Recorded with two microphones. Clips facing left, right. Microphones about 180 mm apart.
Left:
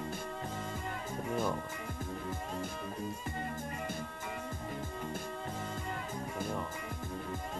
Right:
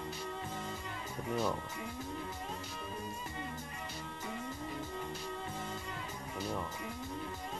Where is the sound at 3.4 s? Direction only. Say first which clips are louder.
Left 4 dB; 50° left (ahead or behind).